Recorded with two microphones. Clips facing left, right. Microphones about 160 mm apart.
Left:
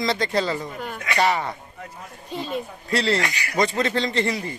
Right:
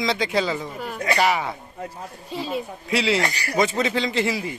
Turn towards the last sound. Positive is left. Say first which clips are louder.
# even
turn(degrees=-5)  # may be behind; listen again after turning